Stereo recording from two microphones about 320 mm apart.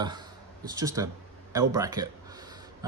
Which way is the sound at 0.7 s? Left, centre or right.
Centre.